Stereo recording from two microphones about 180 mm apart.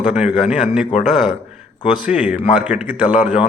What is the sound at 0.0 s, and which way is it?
A man's voice, 5° right (ahead or behind).